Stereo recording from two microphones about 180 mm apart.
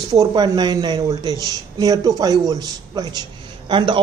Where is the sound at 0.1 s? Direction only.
20° right (ahead or behind).